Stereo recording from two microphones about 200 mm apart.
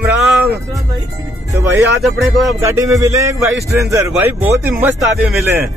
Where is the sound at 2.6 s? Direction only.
15° right (ahead or behind).